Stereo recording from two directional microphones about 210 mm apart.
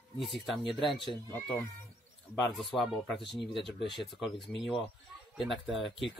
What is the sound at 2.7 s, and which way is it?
Speech, centre (ahead or behind).